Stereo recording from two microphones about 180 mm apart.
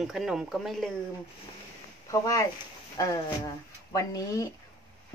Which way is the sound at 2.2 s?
20° left (ahead or behind).